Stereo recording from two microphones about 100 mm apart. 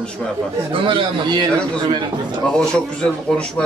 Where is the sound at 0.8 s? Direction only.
55° right (ahead or behind).